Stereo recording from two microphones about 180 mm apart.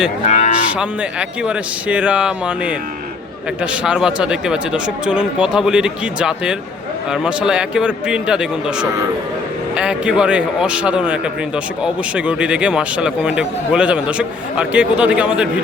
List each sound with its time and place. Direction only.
0.3 s cattle: 40° left (ahead or behind)
1.4 s speech: 5° right (ahead or behind)